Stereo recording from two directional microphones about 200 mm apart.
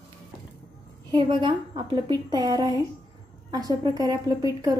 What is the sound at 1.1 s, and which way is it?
A woman's voice, 25° right (ahead or behind).